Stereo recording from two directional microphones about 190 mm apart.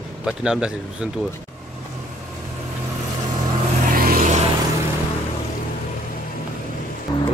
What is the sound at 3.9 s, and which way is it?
Vehicle, 50° right (ahead or behind).